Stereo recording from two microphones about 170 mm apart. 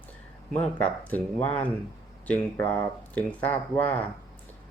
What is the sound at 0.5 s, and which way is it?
Speech, 10° left (ahead or behind).